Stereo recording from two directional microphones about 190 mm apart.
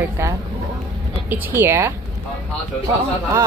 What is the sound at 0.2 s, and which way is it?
A woman's voice, 15° right (ahead or behind).